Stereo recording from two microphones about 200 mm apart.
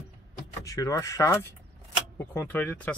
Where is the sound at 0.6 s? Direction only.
15° left (ahead or behind).